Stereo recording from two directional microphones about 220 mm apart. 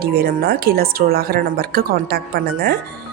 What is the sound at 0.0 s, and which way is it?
Speech, 45° right (ahead or behind).